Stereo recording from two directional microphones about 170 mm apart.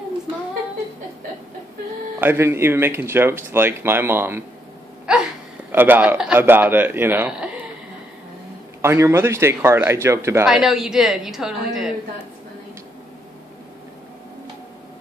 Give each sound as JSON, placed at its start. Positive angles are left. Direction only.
{"t": 2.1, "sound": "speech", "side_deg": -15}
{"t": 8.8, "sound": "speech", "side_deg": -15}
{"t": 10.4, "sound": "a woman's voice", "side_deg": -5}